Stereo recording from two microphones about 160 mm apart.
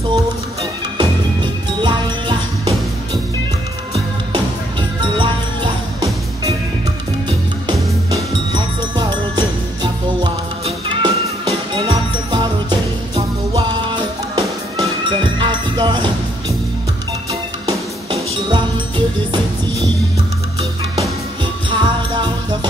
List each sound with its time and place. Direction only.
0.1 s music: 25° right (ahead or behind)
3.9 s music: 30° right (ahead or behind)
7.2 s music: 30° right (ahead or behind)
10.6 s music: 35° right (ahead or behind)
18.1 s music: 35° right (ahead or behind)
21.6 s music: 30° right (ahead or behind)